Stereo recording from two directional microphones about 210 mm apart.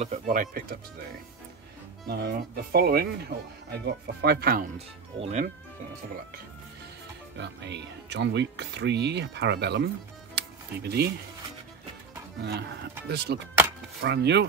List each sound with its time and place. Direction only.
0.0 s speech: 35° right (ahead or behind)
2.0 s speech: 50° right (ahead or behind)
4.7 s speech: 30° right (ahead or behind)
7.3 s speech: 55° right (ahead or behind)
10.3 s music: 50° right (ahead or behind)
12.4 s speech: 50° right (ahead or behind)